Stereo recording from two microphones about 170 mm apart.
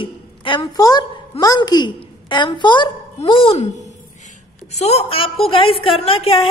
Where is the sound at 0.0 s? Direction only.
30° left (ahead or behind).